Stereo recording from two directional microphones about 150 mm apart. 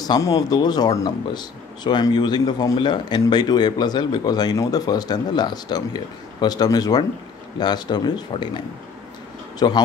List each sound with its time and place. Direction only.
0.0 s speech: 25° left (ahead or behind)